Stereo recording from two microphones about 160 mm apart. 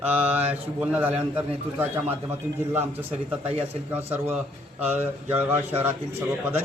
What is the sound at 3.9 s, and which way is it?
Speech, 10° right (ahead or behind).